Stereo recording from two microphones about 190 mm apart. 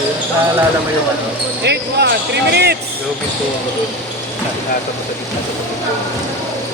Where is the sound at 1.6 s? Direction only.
60° right (ahead or behind).